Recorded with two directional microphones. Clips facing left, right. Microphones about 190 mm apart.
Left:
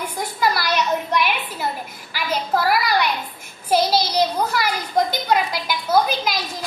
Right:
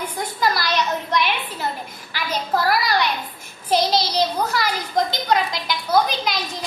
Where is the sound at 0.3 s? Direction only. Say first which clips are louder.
Left 1 dB; 10° left (ahead or behind).